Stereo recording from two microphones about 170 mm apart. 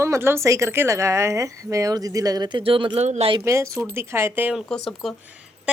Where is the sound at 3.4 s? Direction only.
15° right (ahead or behind).